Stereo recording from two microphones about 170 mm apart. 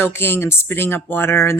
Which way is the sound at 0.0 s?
15° left (ahead or behind).